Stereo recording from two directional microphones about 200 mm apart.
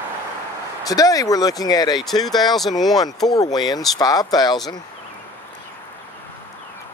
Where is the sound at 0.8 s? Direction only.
20° left (ahead or behind).